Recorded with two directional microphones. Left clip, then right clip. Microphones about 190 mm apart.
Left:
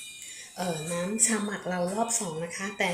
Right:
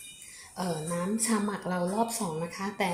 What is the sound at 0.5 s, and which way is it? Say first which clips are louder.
Speech: left 1 dB; 45° right (ahead or behind).